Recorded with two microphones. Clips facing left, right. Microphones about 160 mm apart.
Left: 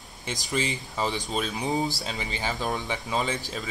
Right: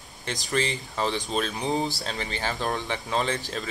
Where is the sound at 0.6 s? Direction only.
10° left (ahead or behind).